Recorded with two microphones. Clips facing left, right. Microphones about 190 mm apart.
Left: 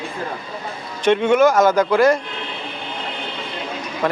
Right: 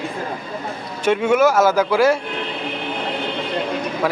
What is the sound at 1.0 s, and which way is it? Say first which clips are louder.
A man's voice: left 1 dB; 5° right (ahead or behind).